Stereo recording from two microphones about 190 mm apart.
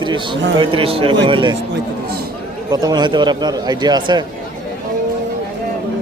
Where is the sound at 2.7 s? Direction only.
20° right (ahead or behind).